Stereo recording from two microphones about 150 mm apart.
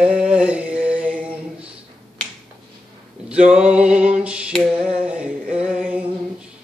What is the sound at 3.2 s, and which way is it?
Male singing, 5° right (ahead or behind).